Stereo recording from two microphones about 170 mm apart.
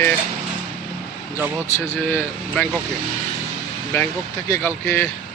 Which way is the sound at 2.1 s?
10° left (ahead or behind).